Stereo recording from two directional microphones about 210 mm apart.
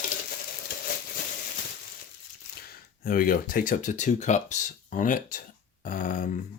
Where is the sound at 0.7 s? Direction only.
45° left (ahead or behind).